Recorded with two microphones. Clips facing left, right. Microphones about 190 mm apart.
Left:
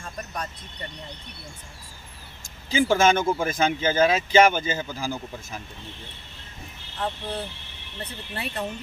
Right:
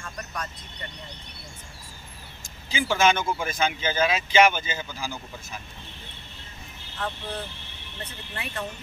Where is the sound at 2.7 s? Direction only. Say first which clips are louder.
Left 3 dB; 45° left (ahead or behind).